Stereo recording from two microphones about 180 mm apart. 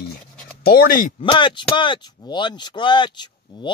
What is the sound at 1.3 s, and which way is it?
Speech, 25° left (ahead or behind).